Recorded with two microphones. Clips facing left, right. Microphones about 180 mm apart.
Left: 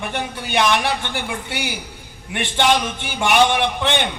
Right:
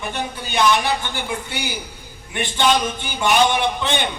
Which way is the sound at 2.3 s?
70° left (ahead or behind).